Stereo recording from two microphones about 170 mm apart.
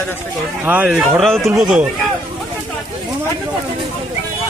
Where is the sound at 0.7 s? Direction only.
5° right (ahead or behind).